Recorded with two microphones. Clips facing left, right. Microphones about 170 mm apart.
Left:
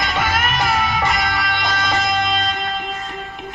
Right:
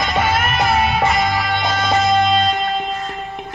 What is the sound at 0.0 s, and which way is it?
Music, 25° right (ahead or behind).